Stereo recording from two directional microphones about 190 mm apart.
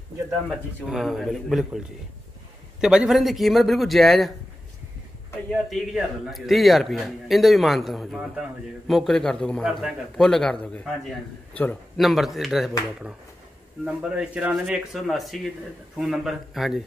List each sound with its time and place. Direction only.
0.5 s a man's voice: centre (ahead or behind)
2.8 s a man's voice: 5° right (ahead or behind)
5.5 s a man's voice: centre (ahead or behind)
13.8 s a man's voice: 5° right (ahead or behind)